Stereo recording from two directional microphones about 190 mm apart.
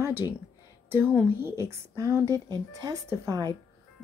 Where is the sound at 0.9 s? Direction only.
10° right (ahead or behind).